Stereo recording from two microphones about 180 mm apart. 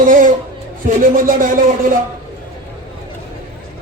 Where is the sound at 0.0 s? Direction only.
50° right (ahead or behind).